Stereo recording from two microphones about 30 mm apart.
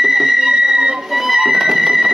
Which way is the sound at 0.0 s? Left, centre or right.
Centre.